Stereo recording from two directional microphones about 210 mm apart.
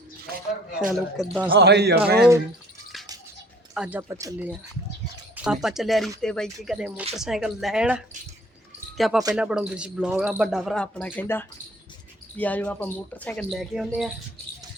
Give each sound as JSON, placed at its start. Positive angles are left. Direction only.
{"t": 0.9, "sound": "speech", "side_deg": 0}
{"t": 1.5, "sound": "speech", "side_deg": -50}
{"t": 3.8, "sound": "speech", "side_deg": -5}